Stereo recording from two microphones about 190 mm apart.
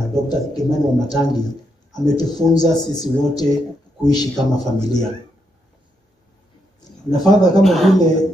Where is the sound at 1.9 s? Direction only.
20° left (ahead or behind).